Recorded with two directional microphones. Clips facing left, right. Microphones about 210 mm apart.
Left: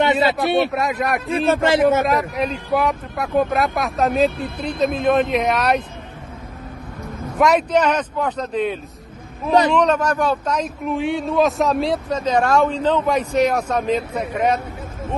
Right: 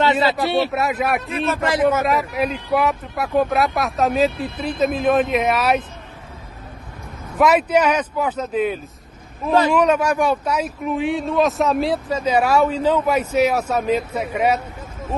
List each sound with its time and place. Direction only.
0.7 s speech: 5° right (ahead or behind)
1.3 s a man's voice: 30° left (ahead or behind)
2.0 s speech: centre (ahead or behind)
7.3 s speech: 5° right (ahead or behind)
9.8 s speech: 10° right (ahead or behind)